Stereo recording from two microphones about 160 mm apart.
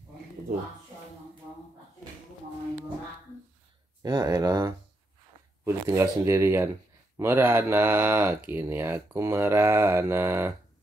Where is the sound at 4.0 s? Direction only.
25° right (ahead or behind).